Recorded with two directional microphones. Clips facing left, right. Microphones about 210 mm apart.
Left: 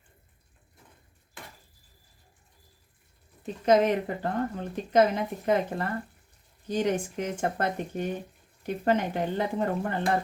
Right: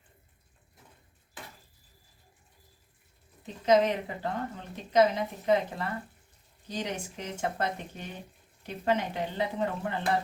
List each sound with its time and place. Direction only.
3.7 s a woman's voice: 50° left (ahead or behind)